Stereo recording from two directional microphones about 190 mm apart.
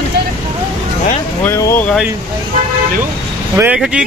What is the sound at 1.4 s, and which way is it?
Speech, 15° left (ahead or behind).